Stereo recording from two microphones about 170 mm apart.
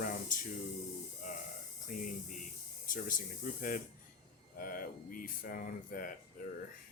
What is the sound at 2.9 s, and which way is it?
Speech, 50° left (ahead or behind).